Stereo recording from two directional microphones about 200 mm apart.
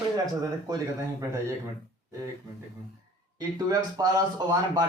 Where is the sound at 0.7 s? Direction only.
15° right (ahead or behind).